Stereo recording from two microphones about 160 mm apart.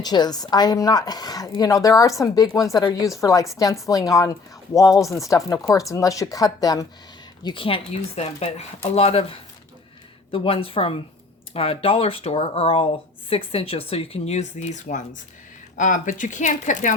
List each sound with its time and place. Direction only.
0.0 s speech: 25° left (ahead or behind)
7.4 s speech: 35° left (ahead or behind); by 16.9 s 50° left (ahead or behind)